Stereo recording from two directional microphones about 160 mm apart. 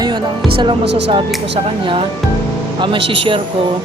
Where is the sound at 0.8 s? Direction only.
90° right.